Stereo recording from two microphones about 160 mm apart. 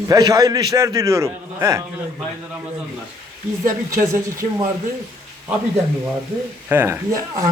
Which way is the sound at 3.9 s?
20° right (ahead or behind).